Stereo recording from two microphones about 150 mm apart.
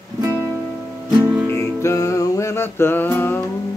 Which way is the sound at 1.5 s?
20° left (ahead or behind).